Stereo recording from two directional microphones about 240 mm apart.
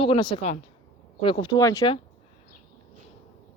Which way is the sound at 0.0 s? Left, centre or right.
Left.